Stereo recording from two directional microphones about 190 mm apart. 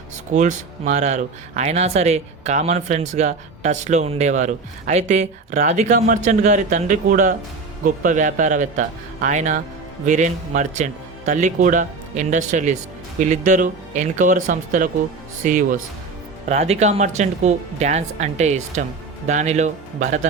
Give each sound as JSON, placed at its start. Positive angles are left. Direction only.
{"t": 0.3, "sound": "speech", "side_deg": -40}